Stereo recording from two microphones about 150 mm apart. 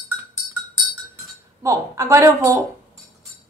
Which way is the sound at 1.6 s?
20° right (ahead or behind).